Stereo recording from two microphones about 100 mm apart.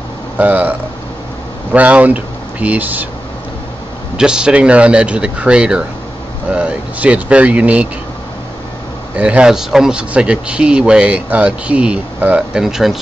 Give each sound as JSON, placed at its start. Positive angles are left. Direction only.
{"t": 0.4, "sound": "speech", "side_deg": -15}
{"t": 4.2, "sound": "speech", "side_deg": -10}
{"t": 9.1, "sound": "speech", "side_deg": -10}